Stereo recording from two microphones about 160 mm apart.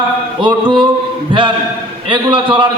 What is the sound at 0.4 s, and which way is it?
Speech, 30° right (ahead or behind).